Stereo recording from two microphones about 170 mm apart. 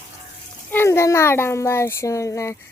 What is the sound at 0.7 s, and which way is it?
A child's voice, 15° left (ahead or behind).